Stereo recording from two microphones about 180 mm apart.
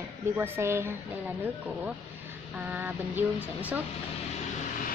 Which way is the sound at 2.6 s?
10° right (ahead or behind).